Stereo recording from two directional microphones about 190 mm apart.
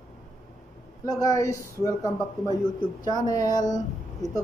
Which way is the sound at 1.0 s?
20° left (ahead or behind).